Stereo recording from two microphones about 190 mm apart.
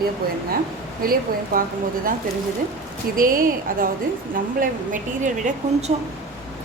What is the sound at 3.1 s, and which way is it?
A woman's voice, 45° right (ahead or behind).